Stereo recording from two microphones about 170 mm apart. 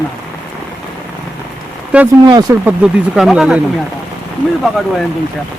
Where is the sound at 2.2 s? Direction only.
25° right (ahead or behind).